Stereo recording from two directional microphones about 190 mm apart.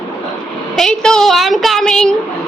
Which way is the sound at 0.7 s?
5° left (ahead or behind).